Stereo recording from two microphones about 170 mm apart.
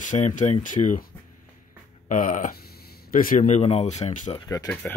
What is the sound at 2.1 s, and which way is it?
Speech, 50° left (ahead or behind).